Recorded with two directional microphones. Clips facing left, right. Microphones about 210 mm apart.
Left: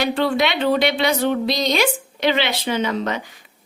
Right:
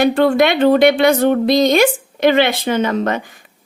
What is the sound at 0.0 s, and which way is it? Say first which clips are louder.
Speech: right 7 dB; 50° right (ahead or behind).